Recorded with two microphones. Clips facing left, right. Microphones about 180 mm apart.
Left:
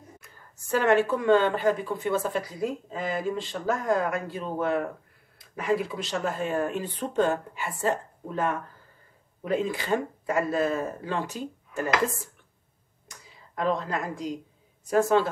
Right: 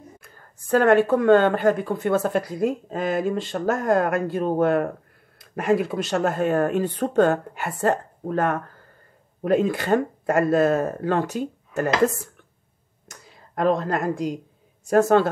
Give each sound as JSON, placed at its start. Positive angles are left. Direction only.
{"t": 0.2, "sound": "speech", "side_deg": -50}
{"t": 13.1, "sound": "speech", "side_deg": -50}